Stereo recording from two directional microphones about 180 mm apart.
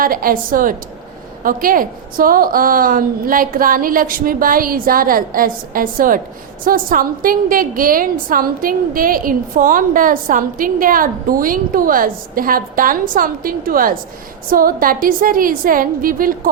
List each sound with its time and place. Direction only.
0.0 s a woman's voice: 50° right (ahead or behind)